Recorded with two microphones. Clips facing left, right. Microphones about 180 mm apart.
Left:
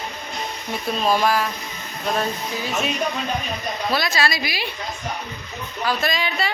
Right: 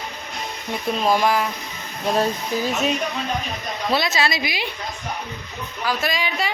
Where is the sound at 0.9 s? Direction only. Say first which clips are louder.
Even; 15° right (ahead or behind).